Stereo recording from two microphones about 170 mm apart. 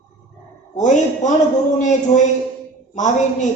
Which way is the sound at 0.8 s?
45° left (ahead or behind).